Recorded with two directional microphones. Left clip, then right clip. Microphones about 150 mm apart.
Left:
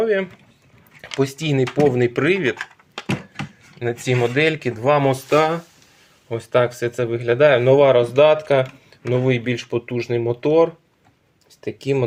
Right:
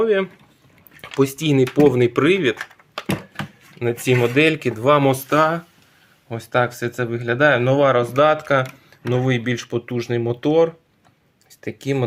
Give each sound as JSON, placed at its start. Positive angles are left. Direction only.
{"t": 0.0, "sound": "speech", "side_deg": -20}
{"t": 3.8, "sound": "speech", "side_deg": -30}
{"t": 5.3, "sound": "speech", "side_deg": -5}